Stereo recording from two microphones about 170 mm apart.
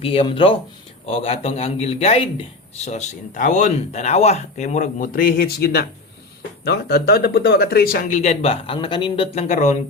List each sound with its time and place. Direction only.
0.0 s speech: 30° left (ahead or behind); by 8.2 s 60° left (ahead or behind)
8.2 s speech: 40° left (ahead or behind)